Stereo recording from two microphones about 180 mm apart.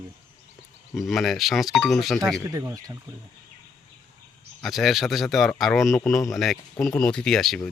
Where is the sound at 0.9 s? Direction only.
Centre (ahead or behind).